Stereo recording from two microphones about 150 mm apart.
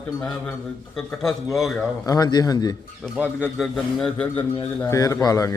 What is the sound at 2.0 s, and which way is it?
Speech, 25° left (ahead or behind).